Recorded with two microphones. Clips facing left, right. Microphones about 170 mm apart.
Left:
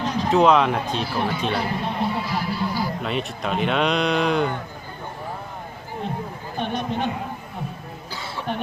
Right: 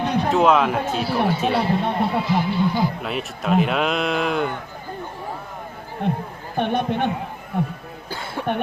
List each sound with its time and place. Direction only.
0.0 s music: 60° right (ahead or behind)
0.3 s speech: centre (ahead or behind)
1.5 s speech: 25° right (ahead or behind)
3.0 s speech: 5° right (ahead or behind)
6.1 s speech: 60° right (ahead or behind)
8.1 s music: 50° right (ahead or behind)